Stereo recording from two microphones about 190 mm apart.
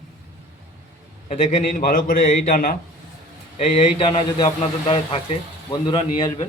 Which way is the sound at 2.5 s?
50° left (ahead or behind).